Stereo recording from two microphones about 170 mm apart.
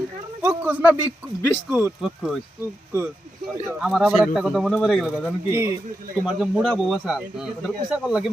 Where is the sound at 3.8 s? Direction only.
Centre (ahead or behind).